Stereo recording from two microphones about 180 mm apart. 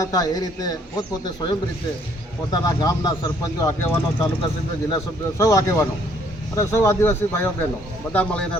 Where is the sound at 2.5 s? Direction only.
20° left (ahead or behind).